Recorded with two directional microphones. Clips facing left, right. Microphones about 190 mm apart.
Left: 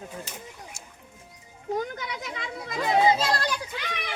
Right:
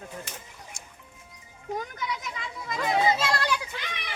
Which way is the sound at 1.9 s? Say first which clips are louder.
Right 1 dB; 65° left (ahead or behind).